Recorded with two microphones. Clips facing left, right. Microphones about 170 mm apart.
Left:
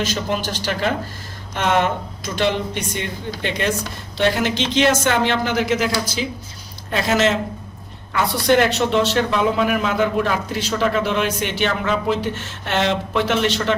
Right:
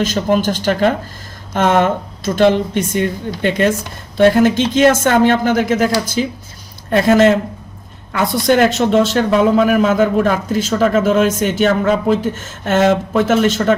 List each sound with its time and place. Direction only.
0.0 s a woman's voice: 50° right (ahead or behind)